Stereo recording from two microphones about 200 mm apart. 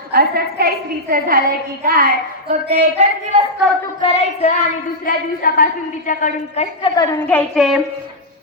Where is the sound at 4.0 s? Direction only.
30° left (ahead or behind).